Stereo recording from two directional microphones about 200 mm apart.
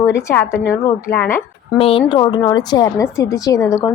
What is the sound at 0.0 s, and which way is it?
A woman's voice, 15° left (ahead or behind).